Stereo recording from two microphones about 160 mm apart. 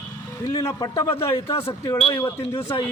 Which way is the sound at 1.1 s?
35° left (ahead or behind).